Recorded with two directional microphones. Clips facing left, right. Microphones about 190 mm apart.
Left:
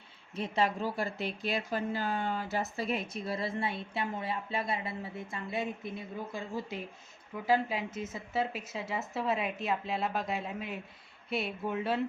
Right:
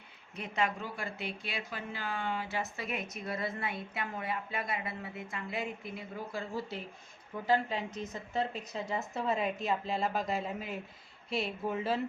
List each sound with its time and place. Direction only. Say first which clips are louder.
0.3 s speech: left 3 dB; 30° left (ahead or behind)
7.4 s a woman's voice: left 1 dB; 10° left (ahead or behind)